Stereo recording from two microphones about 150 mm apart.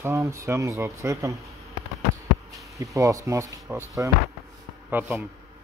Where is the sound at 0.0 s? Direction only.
20° right (ahead or behind).